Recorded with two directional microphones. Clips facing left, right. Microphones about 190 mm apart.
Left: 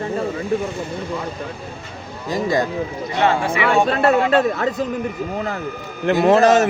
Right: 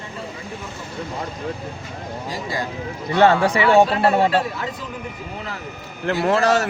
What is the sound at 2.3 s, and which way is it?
Speech, 45° left (ahead or behind).